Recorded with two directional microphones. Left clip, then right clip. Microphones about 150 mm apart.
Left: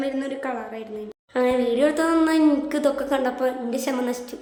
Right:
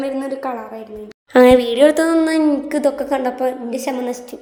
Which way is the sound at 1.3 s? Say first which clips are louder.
Right 10 dB; 85° right.